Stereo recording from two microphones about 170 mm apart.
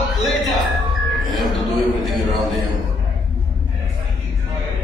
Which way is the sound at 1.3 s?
Centre (ahead or behind).